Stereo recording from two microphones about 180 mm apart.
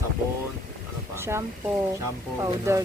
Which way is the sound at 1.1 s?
15° right (ahead or behind).